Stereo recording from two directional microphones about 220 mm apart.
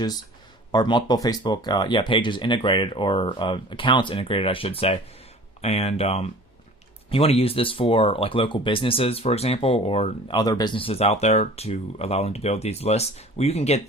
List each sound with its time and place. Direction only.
0.7 s speech: 20° left (ahead or behind)